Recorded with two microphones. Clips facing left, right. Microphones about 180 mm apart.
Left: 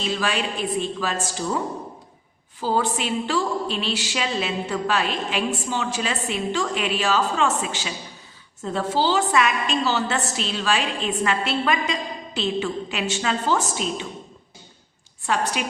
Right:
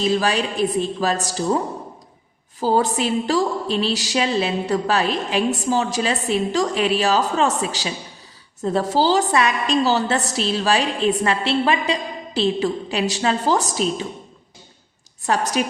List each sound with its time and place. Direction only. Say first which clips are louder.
0.0 s a woman's voice: right 5 dB; 40° right (ahead or behind)
2.6 s a woman's voice: right 4 dB; 40° right (ahead or behind)
15.3 s a woman's voice: right 4 dB; 40° right (ahead or behind)